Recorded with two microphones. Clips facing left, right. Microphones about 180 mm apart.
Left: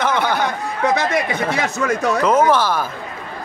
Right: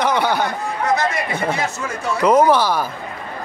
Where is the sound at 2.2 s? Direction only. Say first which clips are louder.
Right 3 dB; 10° right (ahead or behind).